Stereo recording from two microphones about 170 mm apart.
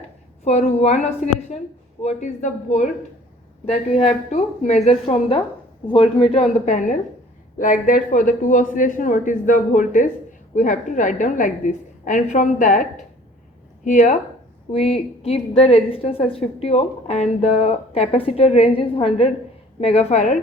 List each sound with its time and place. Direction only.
0.4 s a woman's voice: 40° left (ahead or behind)